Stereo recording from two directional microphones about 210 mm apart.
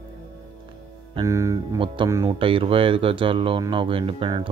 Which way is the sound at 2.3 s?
25° right (ahead or behind).